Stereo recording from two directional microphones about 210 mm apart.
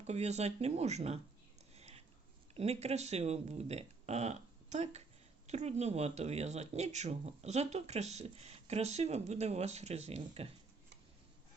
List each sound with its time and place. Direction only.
0.0 s speech: 30° right (ahead or behind)
1.7 s a sound: 30° right (ahead or behind)
2.6 s speech: 30° right (ahead or behind)